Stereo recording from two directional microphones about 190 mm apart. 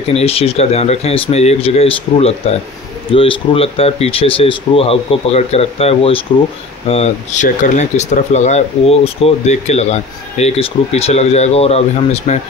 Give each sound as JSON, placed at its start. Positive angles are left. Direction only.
{"t": 0.1, "sound": "speech", "side_deg": 30}